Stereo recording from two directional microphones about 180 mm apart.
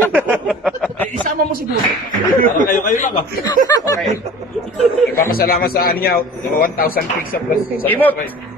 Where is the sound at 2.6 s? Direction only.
50° left (ahead or behind).